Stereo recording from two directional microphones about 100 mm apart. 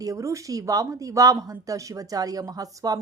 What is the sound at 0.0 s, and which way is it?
Speech, 35° right (ahead or behind).